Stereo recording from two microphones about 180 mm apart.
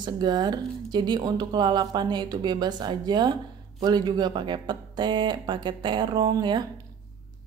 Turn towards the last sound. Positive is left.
turn(degrees=-25)  # may be behind; listen again after turning